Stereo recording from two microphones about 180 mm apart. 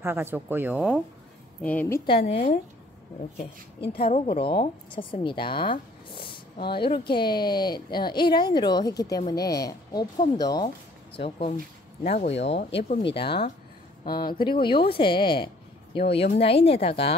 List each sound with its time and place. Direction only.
0.0 s speech: 15° right (ahead or behind)
1.6 s a woman's voice: 10° left (ahead or behind)
2.0 s speech: 35° left (ahead or behind)
3.8 s a woman's voice: 30° left (ahead or behind)
12.0 s a woman's voice: 40° left (ahead or behind)